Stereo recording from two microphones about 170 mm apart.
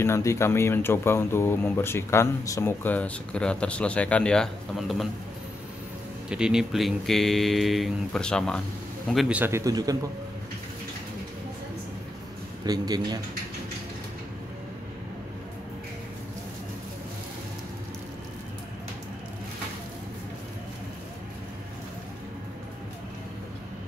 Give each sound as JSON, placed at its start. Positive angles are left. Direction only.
{"t": 0.0, "sound": "speech", "side_deg": 15}
{"t": 6.2, "sound": "speech", "side_deg": -5}
{"t": 9.4, "sound": "speech", "side_deg": -15}
{"t": 12.6, "sound": "speech", "side_deg": -25}